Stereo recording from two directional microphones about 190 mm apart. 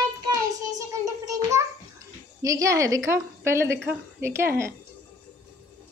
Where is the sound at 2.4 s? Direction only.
15° right (ahead or behind).